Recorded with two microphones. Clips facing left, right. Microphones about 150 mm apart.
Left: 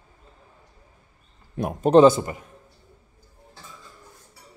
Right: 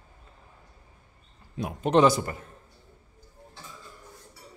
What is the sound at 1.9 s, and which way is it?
Speech, 25° left (ahead or behind).